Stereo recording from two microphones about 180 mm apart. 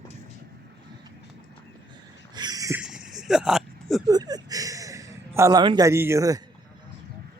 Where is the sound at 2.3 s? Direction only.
25° right (ahead or behind).